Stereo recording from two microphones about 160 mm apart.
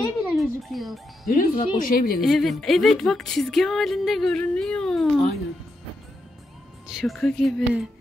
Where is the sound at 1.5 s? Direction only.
35° left (ahead or behind).